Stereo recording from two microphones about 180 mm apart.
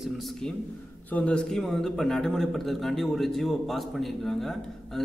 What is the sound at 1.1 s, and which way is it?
A man's voice, 5° left (ahead or behind).